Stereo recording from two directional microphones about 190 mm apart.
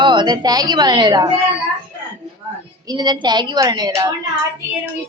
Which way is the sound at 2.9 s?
20° right (ahead or behind).